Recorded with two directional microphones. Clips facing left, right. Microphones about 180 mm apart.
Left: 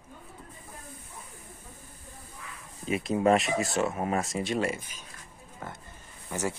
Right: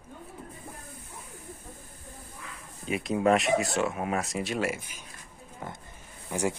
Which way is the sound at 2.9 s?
Centre (ahead or behind).